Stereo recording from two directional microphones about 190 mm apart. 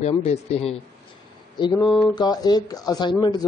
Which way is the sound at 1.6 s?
20° left (ahead or behind).